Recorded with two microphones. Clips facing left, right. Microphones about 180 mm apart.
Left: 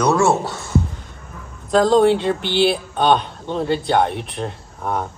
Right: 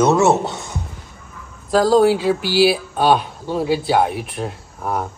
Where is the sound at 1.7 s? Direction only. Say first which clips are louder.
Even; 5° right (ahead or behind).